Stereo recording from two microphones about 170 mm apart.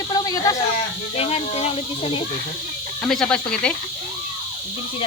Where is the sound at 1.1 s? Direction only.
35° left (ahead or behind).